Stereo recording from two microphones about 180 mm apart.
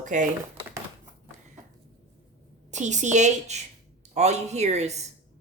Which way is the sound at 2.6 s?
40° right (ahead or behind).